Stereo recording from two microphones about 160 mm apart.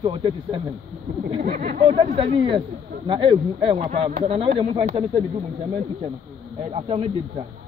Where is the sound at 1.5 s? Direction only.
50° right (ahead or behind).